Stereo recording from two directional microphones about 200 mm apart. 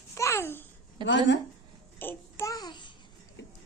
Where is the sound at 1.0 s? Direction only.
65° left (ahead or behind).